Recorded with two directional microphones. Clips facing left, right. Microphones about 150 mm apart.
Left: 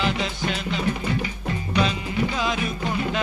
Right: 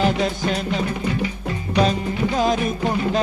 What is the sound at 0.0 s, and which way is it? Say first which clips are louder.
Music: right 5 dB; 45° right (ahead or behind).